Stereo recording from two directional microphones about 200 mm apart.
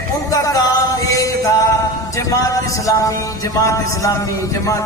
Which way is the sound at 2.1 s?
15° left (ahead or behind).